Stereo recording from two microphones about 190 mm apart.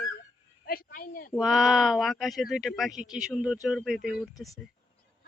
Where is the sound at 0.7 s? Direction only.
50° left (ahead or behind).